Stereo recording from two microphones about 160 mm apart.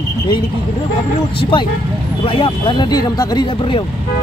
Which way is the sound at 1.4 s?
30° left (ahead or behind).